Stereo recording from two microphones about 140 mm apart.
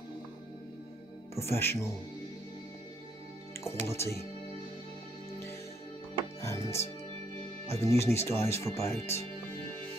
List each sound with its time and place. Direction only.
1.3 s speech: 20° left (ahead or behind)
3.6 s speech: 20° left (ahead or behind)
6.4 s music: 20° left (ahead or behind)
7.6 s speech: 20° left (ahead or behind)